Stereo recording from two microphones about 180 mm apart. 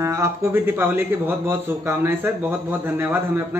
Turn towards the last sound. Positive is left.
turn(degrees=-10)  # may be behind; listen again after turning